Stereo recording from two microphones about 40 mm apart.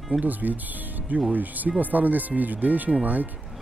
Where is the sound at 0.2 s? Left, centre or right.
Right.